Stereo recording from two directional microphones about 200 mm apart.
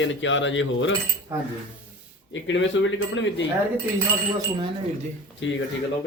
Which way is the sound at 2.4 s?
70° left (ahead or behind).